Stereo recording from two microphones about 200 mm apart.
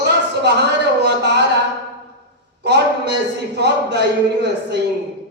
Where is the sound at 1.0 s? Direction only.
55° right (ahead or behind).